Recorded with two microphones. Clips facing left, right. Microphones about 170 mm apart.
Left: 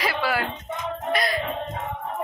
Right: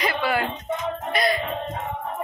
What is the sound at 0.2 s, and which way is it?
Music, centre (ahead or behind).